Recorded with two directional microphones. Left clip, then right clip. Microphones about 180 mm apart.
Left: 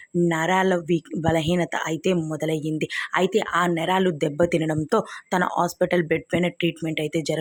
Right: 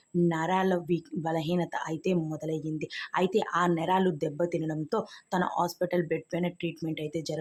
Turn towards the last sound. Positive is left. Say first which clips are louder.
# left 8 dB
turn(degrees=30)  # may be behind; listen again after turning